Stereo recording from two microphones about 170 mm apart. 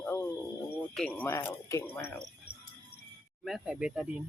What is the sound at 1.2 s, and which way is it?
Speech, 15° left (ahead or behind).